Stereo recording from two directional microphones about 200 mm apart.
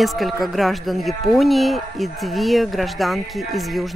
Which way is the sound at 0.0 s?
Centre (ahead or behind).